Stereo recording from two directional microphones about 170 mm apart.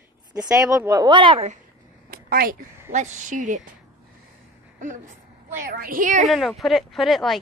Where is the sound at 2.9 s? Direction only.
45° right (ahead or behind).